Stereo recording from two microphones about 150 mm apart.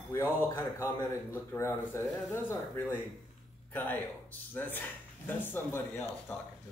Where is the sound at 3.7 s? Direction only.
10° left (ahead or behind).